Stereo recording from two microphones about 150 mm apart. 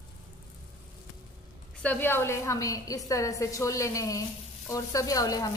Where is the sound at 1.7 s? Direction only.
10° left (ahead or behind).